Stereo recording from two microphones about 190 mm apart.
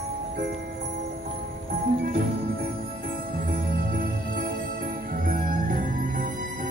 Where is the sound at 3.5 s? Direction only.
50° right (ahead or behind).